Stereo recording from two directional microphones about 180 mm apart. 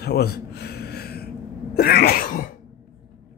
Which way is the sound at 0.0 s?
60° left (ahead or behind).